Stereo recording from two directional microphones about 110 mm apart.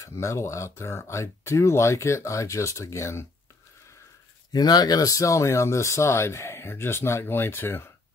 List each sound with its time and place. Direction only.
0.0 s speech: 25° left (ahead or behind)
4.5 s speech: 35° left (ahead or behind); by 7.9 s 20° left (ahead or behind)